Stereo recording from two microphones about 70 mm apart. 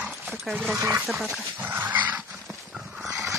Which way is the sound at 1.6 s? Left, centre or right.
Right.